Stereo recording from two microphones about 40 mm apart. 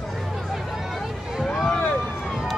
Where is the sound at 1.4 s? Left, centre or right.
Centre.